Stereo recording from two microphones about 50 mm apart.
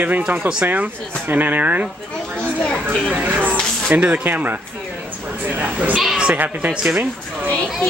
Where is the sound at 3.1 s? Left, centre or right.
Right.